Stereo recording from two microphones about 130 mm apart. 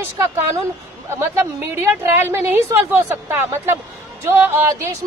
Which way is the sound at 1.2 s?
20° right (ahead or behind).